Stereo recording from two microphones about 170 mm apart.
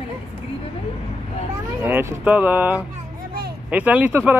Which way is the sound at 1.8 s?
10° right (ahead or behind).